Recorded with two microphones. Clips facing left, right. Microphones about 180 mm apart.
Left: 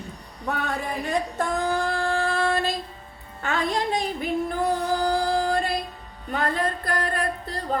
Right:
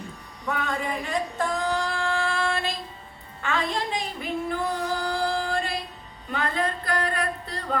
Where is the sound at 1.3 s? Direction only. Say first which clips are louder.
Left 2 dB; 50° left (ahead or behind).